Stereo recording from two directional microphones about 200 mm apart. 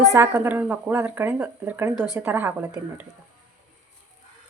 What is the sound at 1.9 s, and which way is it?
Speech, 20° left (ahead or behind).